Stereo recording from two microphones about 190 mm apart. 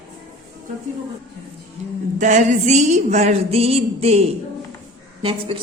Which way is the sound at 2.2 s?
40° right (ahead or behind).